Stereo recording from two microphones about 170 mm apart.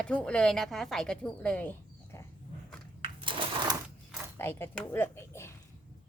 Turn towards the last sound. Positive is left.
turn(degrees=15)  # may be behind; listen again after turning